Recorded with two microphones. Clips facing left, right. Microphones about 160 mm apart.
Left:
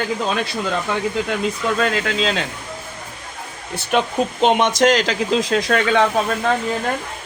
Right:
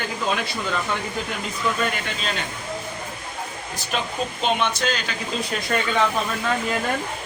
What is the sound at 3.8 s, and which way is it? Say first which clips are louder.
Speech: left 8 dB; 70° left (ahead or behind).